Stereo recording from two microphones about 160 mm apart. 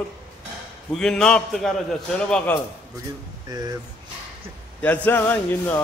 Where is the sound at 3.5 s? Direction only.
25° right (ahead or behind).